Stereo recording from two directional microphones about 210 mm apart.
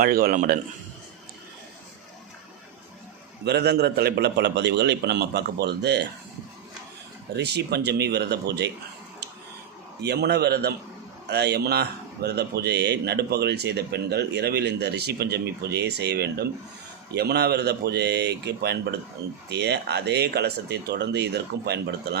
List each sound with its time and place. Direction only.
0.0 s speech: 45° right (ahead or behind)
3.4 s speech: 50° right (ahead or behind)
7.3 s speech: 50° right (ahead or behind)
10.0 s speech: 50° right (ahead or behind)